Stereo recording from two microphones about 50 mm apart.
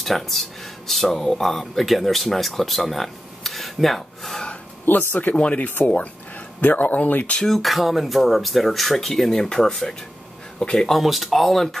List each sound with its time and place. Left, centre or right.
0.0 s speech: centre
4.8 s speech: left
5.3 s speech: left
7.4 s speech: centre
10.9 s speech: centre